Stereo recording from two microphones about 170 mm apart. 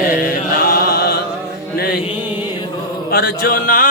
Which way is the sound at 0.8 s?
65° left (ahead or behind).